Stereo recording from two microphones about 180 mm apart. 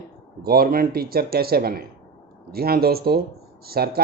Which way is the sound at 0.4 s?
55° right (ahead or behind).